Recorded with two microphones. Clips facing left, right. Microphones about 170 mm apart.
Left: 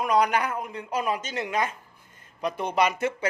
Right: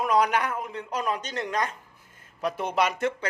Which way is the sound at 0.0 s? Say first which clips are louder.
Even; centre (ahead or behind).